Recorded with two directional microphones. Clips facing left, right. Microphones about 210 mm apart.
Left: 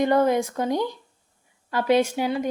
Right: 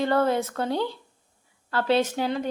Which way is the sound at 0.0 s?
15° left (ahead or behind).